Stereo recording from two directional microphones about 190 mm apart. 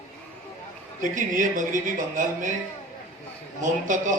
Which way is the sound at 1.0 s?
45° right (ahead or behind).